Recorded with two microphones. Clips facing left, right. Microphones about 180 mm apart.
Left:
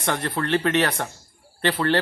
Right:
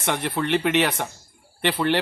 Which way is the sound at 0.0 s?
15° right (ahead or behind).